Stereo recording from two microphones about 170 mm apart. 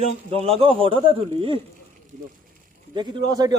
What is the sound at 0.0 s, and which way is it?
Speech, 35° right (ahead or behind).